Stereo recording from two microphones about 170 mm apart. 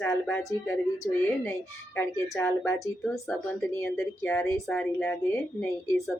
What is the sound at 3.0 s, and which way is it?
Speech, centre (ahead or behind).